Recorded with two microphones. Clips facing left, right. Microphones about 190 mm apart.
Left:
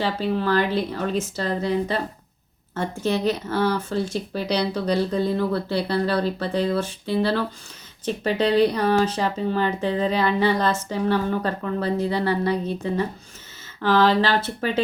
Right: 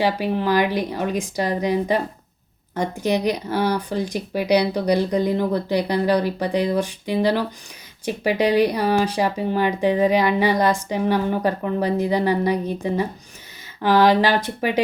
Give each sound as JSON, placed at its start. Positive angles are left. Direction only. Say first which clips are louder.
{"t": 0.0, "sound": "speech", "louder": "right 2 dB", "side_deg": -15}